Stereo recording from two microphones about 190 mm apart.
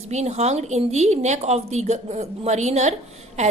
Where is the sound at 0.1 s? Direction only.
35° right (ahead or behind).